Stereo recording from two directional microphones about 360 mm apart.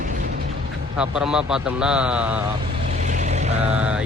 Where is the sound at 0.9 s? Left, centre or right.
Centre.